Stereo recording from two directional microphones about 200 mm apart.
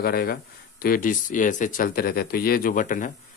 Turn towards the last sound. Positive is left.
turn(degrees=40)  # may be behind; listen again after turning